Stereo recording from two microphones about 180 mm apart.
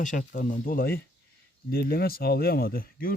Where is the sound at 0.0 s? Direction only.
45° left (ahead or behind).